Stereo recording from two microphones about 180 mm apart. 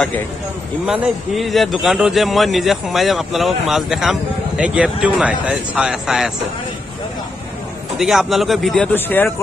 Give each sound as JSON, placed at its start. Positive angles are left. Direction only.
{"t": 0.8, "sound": "a man's voice", "side_deg": -5}
{"t": 8.0, "sound": "a man's voice", "side_deg": 0}